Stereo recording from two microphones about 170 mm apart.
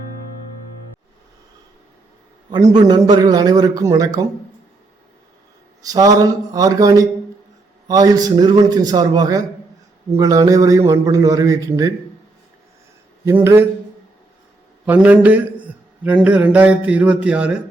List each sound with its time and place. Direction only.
2.5 s a man's voice: 25° right (ahead or behind)
5.8 s a man's voice: 20° right (ahead or behind)
13.2 s speech: 15° right (ahead or behind)
14.8 s speech: 10° right (ahead or behind)